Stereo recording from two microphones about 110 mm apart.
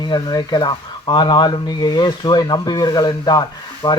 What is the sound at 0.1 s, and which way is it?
A man's voice, 40° left (ahead or behind).